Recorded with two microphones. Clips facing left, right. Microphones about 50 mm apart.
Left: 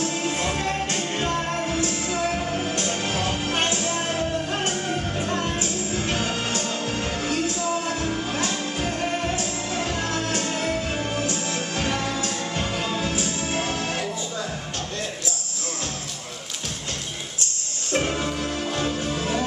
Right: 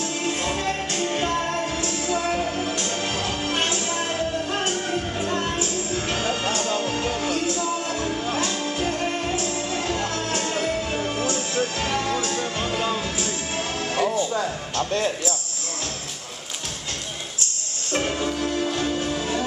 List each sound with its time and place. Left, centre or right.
1.1 s music: centre
13.0 s music: centre
14.0 s music: right
17.9 s music: centre